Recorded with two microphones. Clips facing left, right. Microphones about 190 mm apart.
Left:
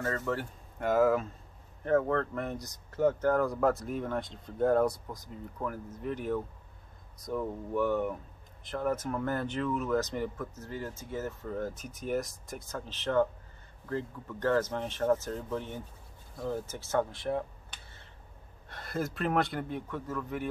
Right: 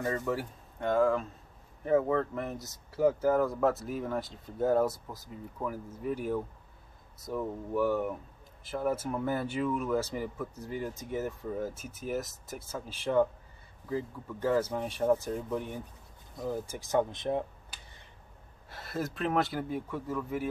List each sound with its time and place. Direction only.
0.0 s speech: 15° right (ahead or behind)
0.7 s speech: 5° left (ahead or behind)
1.9 s speech: 10° right (ahead or behind)
18.7 s speech: centre (ahead or behind)